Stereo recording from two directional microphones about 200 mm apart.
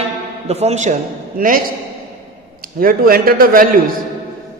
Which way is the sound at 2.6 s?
45° right (ahead or behind).